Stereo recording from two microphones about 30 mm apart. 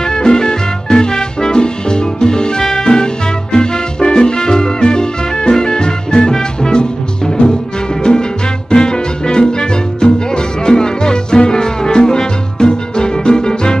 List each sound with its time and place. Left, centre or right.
0.0 s music: left